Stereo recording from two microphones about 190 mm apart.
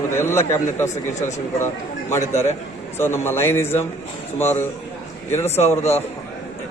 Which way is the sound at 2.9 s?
15° left (ahead or behind).